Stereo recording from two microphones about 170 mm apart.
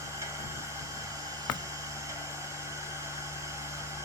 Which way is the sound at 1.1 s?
20° right (ahead or behind).